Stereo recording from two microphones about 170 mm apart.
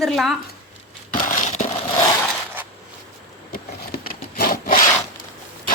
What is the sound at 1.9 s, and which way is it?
Crushing, 25° left (ahead or behind).